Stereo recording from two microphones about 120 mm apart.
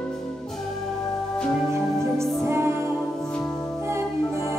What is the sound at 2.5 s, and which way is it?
Music, 20° right (ahead or behind).